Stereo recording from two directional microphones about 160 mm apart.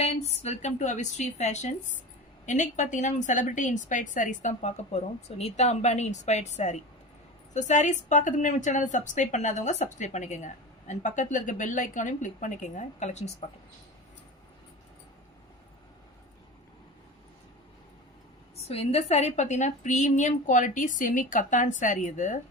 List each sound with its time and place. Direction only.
0.0 s a woman's voice: 45° left (ahead or behind)
18.5 s a woman's voice: 40° left (ahead or behind)